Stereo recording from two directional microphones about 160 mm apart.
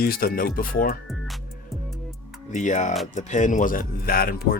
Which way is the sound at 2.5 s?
50° left (ahead or behind).